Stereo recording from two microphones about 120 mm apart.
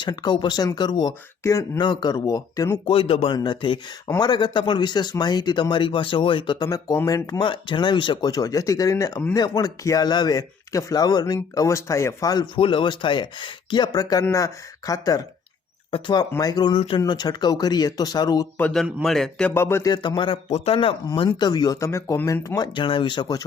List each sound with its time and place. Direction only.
0.0 s speech: 40° left (ahead or behind)
1.5 s speech: 25° left (ahead or behind)
1.8 s speech: 40° left (ahead or behind)
2.8 s a man's voice: 50° left (ahead or behind)
3.3 s speech: 40° left (ahead or behind)
7.4 s speech: 45° left (ahead or behind)
12.5 s speech: 45° left (ahead or behind); by 15.2 s 30° left (ahead or behind)
15.9 s speech: 40° left (ahead or behind)
19.0 s speech: 5° left (ahead or behind)
19.5 s speech: 20° left (ahead or behind)
19.9 s a man's voice: 40° left (ahead or behind)
21.2 s speech: 35° left (ahead or behind)